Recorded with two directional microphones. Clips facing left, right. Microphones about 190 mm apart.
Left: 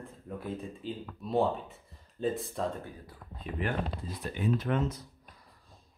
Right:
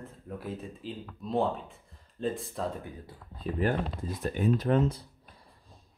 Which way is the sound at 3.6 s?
40° right (ahead or behind).